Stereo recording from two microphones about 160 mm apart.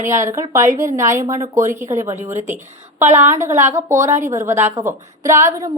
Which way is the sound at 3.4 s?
15° right (ahead or behind).